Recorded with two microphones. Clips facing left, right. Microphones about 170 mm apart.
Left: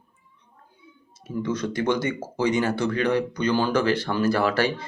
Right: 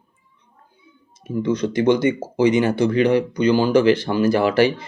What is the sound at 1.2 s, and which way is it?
Speech, 15° right (ahead or behind).